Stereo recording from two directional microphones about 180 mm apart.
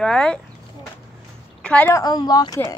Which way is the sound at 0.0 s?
5° left (ahead or behind).